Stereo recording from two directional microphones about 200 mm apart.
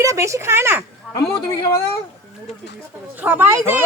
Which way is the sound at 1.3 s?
15° left (ahead or behind).